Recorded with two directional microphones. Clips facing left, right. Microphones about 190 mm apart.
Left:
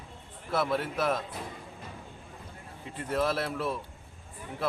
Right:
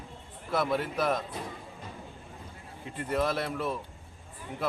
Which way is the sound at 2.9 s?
Centre (ahead or behind).